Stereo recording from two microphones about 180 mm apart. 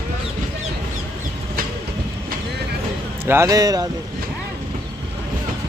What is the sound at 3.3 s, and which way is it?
Speech, 15° right (ahead or behind).